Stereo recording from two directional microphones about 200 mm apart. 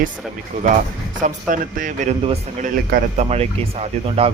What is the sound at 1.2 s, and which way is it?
Speech, 40° right (ahead or behind).